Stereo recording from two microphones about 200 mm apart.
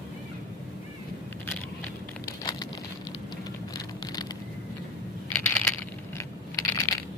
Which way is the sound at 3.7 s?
20° left (ahead or behind).